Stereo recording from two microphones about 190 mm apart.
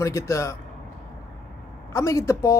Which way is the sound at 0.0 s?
15° left (ahead or behind).